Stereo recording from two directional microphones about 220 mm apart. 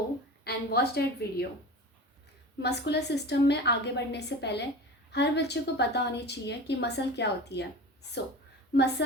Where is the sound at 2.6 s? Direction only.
50° left (ahead or behind).